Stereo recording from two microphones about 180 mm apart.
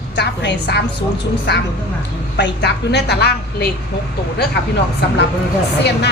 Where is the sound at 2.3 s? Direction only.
70° left (ahead or behind).